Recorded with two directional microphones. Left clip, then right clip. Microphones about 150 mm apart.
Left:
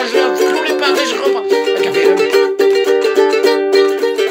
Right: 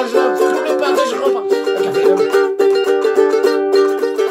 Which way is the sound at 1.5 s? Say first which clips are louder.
Left 2 dB; 30° left (ahead or behind).